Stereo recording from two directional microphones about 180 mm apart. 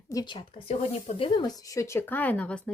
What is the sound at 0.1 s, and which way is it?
Speech, 25° left (ahead or behind).